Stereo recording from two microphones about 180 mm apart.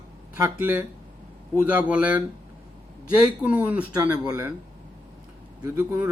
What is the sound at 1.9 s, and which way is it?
A man's voice, 5° right (ahead or behind).